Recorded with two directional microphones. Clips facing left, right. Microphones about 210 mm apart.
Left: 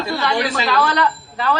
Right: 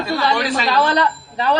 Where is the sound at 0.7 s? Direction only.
20° right (ahead or behind).